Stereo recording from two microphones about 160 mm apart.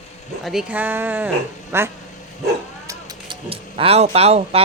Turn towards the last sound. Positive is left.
turn(degrees=-40)  # may be behind; listen again after turning